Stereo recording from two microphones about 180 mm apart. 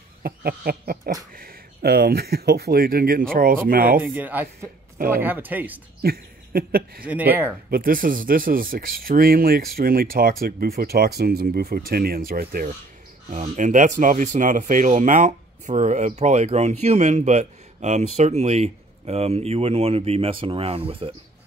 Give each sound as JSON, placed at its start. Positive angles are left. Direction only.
{"t": 0.2, "sound": "a sound", "side_deg": -60}
{"t": 1.3, "sound": "speech", "side_deg": -55}
{"t": 4.0, "sound": "speech", "side_deg": -10}
{"t": 6.0, "sound": "speech", "side_deg": -55}
{"t": 7.1, "sound": "speech", "side_deg": -10}
{"t": 7.7, "sound": "speech", "side_deg": -50}
{"t": 13.3, "sound": "speech", "side_deg": -45}